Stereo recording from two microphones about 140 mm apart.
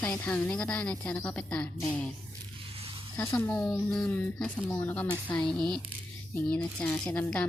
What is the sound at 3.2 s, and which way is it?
Speech, 20° left (ahead or behind).